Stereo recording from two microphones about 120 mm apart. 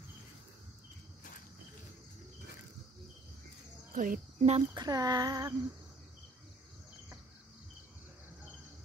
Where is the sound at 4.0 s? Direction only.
65° right (ahead or behind).